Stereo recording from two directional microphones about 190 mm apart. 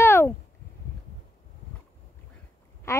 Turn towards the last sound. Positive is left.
turn(degrees=15)  # may be behind; listen again after turning